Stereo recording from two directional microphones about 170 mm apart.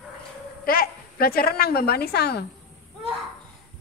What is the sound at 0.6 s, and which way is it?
A woman's voice, 60° left (ahead or behind).